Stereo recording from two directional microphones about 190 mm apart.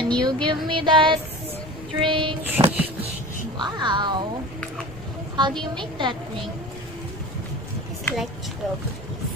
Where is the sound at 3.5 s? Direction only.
25° right (ahead or behind).